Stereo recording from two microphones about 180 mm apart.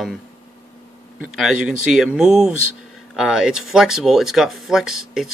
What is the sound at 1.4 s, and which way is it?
Speech, centre (ahead or behind).